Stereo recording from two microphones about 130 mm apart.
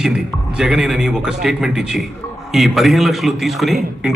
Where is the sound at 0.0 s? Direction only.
5° right (ahead or behind).